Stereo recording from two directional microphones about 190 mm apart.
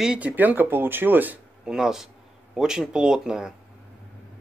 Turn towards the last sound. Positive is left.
turn(degrees=-5)  # may be behind; listen again after turning